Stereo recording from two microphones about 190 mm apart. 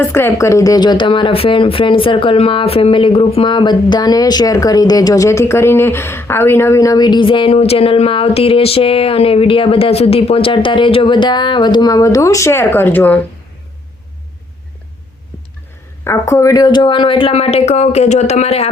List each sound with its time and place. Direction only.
0.0 s speech: 10° left (ahead or behind)
16.0 s speech: 15° left (ahead or behind); by 18.7 s 35° left (ahead or behind)